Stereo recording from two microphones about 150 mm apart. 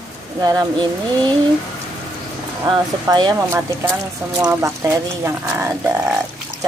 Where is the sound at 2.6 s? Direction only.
30° right (ahead or behind).